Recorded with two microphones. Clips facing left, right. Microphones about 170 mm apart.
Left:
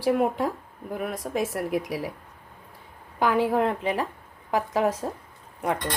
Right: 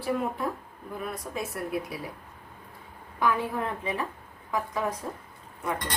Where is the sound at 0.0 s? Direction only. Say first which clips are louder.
Left 6 dB; 80° left.